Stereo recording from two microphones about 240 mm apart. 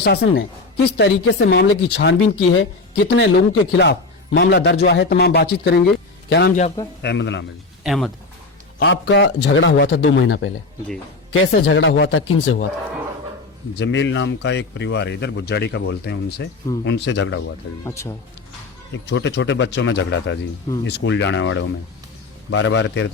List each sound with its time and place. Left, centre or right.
0.0 s a woman's voice: left
2.2 s a man's voice: left
7.9 s speech: centre
8.8 s speech: left
13.7 s speech: left
17.8 s speech: centre
19.0 s speech: left